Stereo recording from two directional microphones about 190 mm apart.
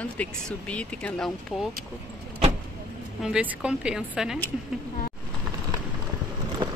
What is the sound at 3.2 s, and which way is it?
A woman's voice, 5° right (ahead or behind).